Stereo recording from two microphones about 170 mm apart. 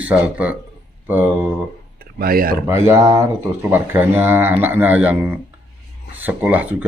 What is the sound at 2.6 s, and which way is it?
Speech, 15° right (ahead or behind).